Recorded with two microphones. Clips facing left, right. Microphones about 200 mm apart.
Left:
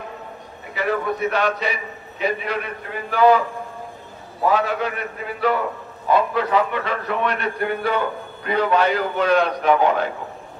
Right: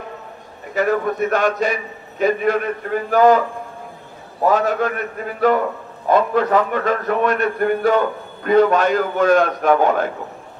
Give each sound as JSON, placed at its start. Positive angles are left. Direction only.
{"t": 0.7, "sound": "a man's voice", "side_deg": -45}
{"t": 4.5, "sound": "a man's voice", "side_deg": -45}